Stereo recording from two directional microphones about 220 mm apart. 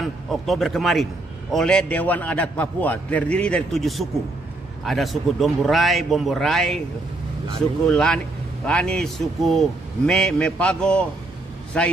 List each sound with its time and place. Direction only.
0.0 s a man's voice: centre (ahead or behind)
7.9 s a man's voice: 5° left (ahead or behind)